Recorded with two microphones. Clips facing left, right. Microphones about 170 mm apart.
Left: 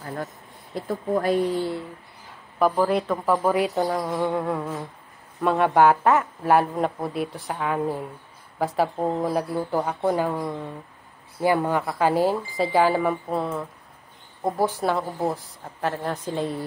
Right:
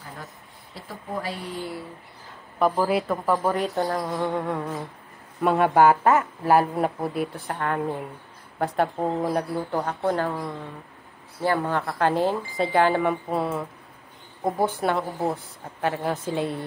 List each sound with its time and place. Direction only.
0.7 s speech: 50° left (ahead or behind)
1.6 s speech: 25° left (ahead or behind)
2.6 s speech: centre (ahead or behind)